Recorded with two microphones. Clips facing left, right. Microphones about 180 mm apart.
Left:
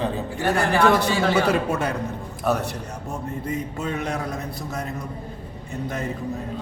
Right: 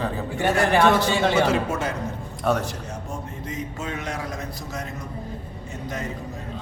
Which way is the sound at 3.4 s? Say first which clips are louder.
Left 3 dB; 60° left (ahead or behind).